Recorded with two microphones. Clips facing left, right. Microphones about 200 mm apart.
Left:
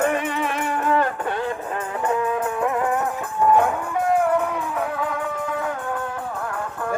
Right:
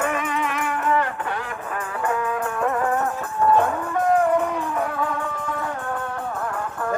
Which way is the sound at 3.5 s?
10° left (ahead or behind).